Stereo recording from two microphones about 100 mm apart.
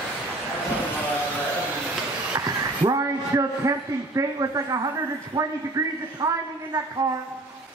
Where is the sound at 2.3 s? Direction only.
40° right (ahead or behind).